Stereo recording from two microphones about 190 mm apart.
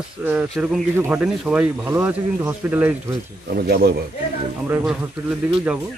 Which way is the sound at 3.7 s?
55° right (ahead or behind).